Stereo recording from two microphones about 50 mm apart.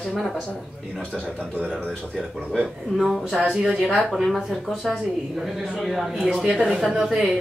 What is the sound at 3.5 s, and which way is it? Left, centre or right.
Speech, centre.